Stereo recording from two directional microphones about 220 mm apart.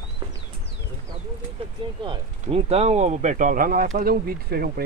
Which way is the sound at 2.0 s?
25° right (ahead or behind).